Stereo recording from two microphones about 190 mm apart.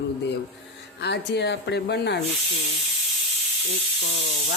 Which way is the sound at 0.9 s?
60° left (ahead or behind).